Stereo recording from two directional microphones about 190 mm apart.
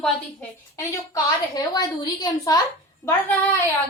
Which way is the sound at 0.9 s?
20° left (ahead or behind).